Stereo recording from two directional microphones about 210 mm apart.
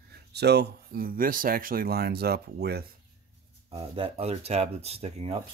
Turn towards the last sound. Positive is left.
turn(degrees=-30)  # may be behind; listen again after turning